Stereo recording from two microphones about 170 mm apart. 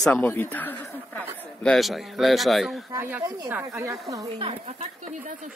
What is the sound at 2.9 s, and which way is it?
Speech, 10° right (ahead or behind).